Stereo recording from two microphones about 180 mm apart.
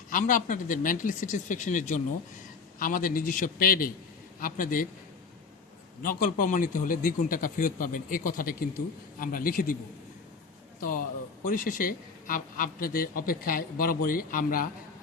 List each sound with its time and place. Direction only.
0.1 s a man's voice: 45° left (ahead or behind)
6.0 s a man's voice: 50° left (ahead or behind)
10.8 s a man's voice: 50° left (ahead or behind)